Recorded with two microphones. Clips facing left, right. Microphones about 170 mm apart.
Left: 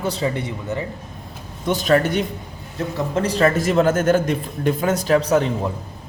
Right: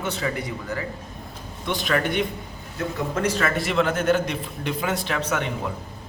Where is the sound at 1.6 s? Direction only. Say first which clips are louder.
Left 7 dB; 45° left (ahead or behind).